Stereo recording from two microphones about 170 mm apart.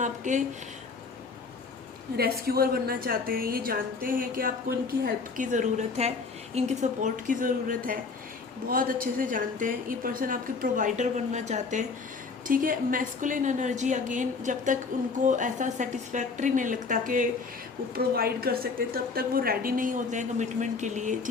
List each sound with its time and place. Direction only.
0.0 s a woman's voice: 45° right (ahead or behind)
2.1 s a woman's voice: 65° right (ahead or behind)
17.9 s a woman's voice: 65° right (ahead or behind); by 21.2 s 45° right (ahead or behind)